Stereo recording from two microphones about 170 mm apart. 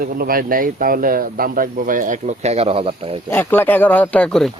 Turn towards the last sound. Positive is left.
turn(degrees=5)  # may be behind; listen again after turning